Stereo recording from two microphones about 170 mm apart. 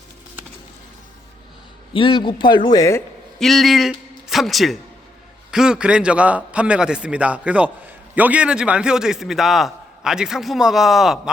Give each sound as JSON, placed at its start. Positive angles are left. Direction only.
{"t": 1.9, "sound": "a man's voice", "side_deg": 30}
{"t": 3.3, "sound": "a man's voice", "side_deg": 0}